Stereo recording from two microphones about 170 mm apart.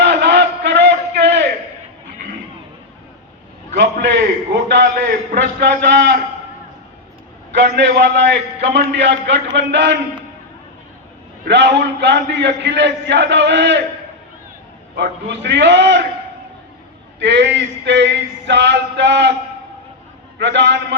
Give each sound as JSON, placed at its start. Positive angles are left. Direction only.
{"t": 0.0, "sound": "a sound", "side_deg": -80}
{"t": 3.8, "sound": "a man's voice", "side_deg": -85}
{"t": 7.5, "sound": "a man's voice", "side_deg": -80}
{"t": 11.4, "sound": "a man's voice", "side_deg": -90}
{"t": 14.9, "sound": "a man's voice", "side_deg": -90}
{"t": 17.2, "sound": "a man's voice", "side_deg": -90}
{"t": 20.4, "sound": "a man's voice", "side_deg": -90}